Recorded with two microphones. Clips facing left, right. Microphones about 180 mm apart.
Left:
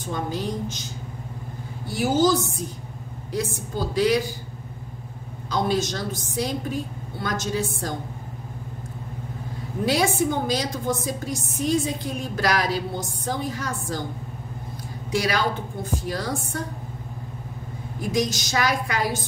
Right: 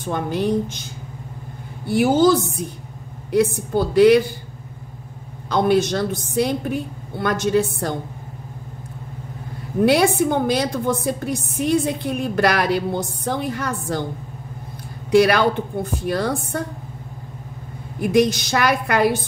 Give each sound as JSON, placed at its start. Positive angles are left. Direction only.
{"t": 0.0, "sound": "a woman's voice", "side_deg": -60}
{"t": 1.9, "sound": "a woman's voice", "side_deg": -60}
{"t": 5.5, "sound": "a woman's voice", "side_deg": -60}
{"t": 9.8, "sound": "a woman's voice", "side_deg": -60}
{"t": 15.0, "sound": "a woman's voice", "side_deg": -60}
{"t": 18.0, "sound": "a woman's voice", "side_deg": -60}